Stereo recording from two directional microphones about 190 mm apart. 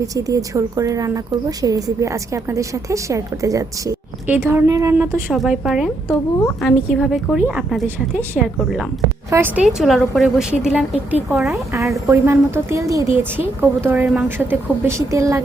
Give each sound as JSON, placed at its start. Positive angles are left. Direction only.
{"t": 0.0, "sound": "speech", "side_deg": -20}
{"t": 5.3, "sound": "speech", "side_deg": -5}
{"t": 9.3, "sound": "speech", "side_deg": -10}